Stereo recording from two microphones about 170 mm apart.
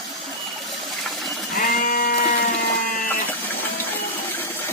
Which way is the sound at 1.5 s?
55° left (ahead or behind).